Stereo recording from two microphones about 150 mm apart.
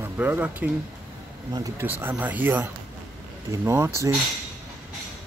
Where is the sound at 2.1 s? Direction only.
10° right (ahead or behind).